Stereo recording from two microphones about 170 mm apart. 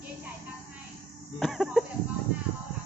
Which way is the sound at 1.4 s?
Centre (ahead or behind).